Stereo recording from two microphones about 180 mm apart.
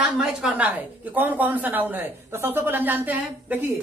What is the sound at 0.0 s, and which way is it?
A woman's voice, 5° right (ahead or behind).